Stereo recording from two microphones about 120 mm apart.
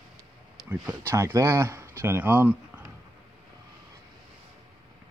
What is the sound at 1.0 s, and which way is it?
Speech, 20° right (ahead or behind).